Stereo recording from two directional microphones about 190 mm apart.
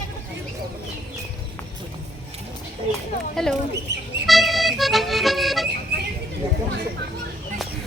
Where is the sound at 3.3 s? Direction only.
5° left (ahead or behind).